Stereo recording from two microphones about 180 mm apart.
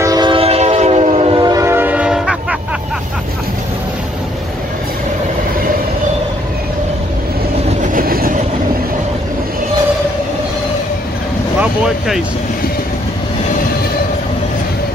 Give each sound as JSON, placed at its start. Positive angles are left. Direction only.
{"t": 0.0, "sound": "train", "side_deg": -20}
{"t": 7.8, "sound": "vehicle", "side_deg": -50}
{"t": 11.6, "sound": "vehicle", "side_deg": -5}